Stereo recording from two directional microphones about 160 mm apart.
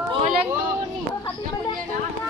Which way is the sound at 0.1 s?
35° right (ahead or behind).